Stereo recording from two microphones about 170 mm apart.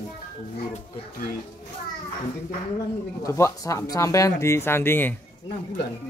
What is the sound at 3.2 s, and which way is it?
Speech, 20° left (ahead or behind).